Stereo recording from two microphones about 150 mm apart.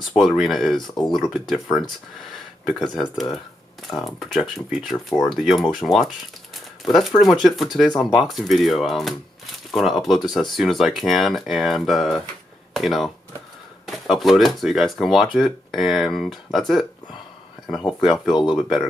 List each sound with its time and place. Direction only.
0.1 s speech: centre (ahead or behind)
0.8 s speech: 30° left (ahead or behind)
1.1 s speech: centre (ahead or behind)
3.0 s speech: centre (ahead or behind)